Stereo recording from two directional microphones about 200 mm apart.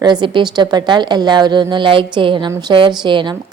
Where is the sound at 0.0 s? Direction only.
20° right (ahead or behind).